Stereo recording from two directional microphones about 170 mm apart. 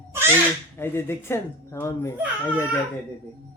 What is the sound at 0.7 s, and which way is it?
Speech, 15° left (ahead or behind).